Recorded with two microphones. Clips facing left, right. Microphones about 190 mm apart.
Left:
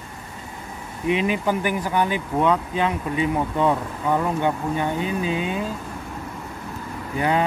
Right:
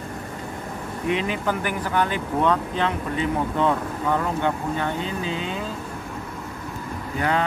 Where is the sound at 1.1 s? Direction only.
15° left (ahead or behind).